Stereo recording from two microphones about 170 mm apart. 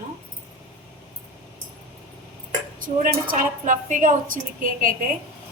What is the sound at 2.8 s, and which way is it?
A woman's voice, 55° right (ahead or behind).